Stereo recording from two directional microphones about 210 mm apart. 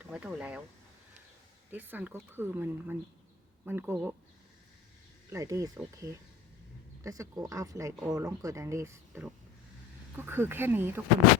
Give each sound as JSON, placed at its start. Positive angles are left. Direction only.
{"t": 0.0, "sound": "speech", "side_deg": -5}
{"t": 1.7, "sound": "speech", "side_deg": -10}
{"t": 5.3, "sound": "speech", "side_deg": -15}